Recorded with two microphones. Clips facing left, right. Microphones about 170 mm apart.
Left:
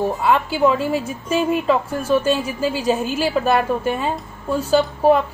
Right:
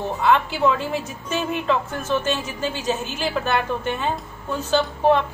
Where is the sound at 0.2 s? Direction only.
10° left (ahead or behind).